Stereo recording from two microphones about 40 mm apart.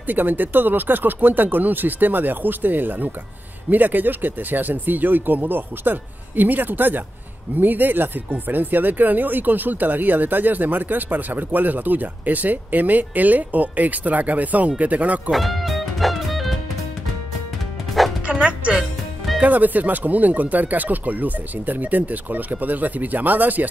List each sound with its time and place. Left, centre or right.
0.0 s speech: right
15.3 s music: centre
18.2 s music: right
19.4 s speech: right